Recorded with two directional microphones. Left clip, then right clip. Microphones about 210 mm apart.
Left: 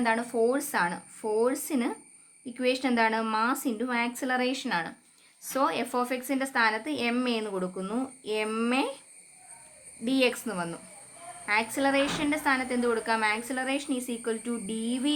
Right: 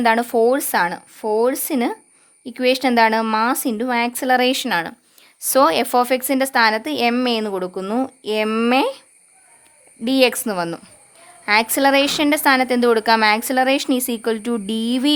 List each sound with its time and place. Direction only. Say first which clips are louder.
0.0 s a woman's voice: right 10 dB; 50° right (ahead or behind)
10.0 s a woman's voice: right 10 dB; 50° right (ahead or behind)